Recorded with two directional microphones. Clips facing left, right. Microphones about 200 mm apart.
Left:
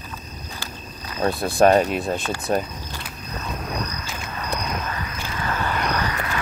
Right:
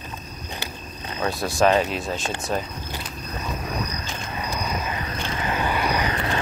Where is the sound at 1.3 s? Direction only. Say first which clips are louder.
Left 3 dB; 55° left (ahead or behind).